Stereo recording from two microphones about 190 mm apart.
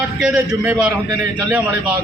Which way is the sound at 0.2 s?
5° right (ahead or behind).